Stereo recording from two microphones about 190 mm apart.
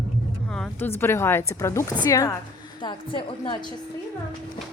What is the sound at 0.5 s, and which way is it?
A woman's voice, 5° left (ahead or behind).